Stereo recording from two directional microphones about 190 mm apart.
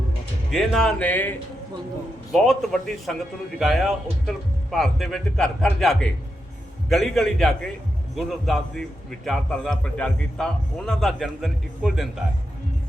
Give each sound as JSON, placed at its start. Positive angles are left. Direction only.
{"t": 0.5, "sound": "a man's voice", "side_deg": 0}